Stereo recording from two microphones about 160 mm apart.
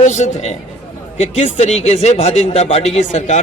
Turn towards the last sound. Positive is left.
turn(degrees=45)  # may be behind; listen again after turning